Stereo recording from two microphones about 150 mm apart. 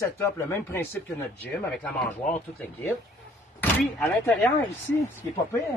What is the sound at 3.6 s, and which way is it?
Speech, 10° left (ahead or behind).